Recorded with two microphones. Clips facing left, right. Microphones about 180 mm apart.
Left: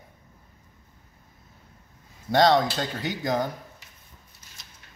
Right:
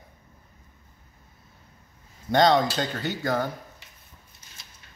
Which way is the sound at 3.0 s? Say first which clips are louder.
Left 2 dB; 15° left (ahead or behind).